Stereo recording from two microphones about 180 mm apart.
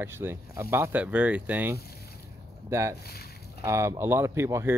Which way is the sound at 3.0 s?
60° left (ahead or behind).